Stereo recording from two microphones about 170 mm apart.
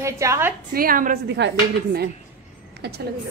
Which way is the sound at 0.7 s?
55° right (ahead or behind).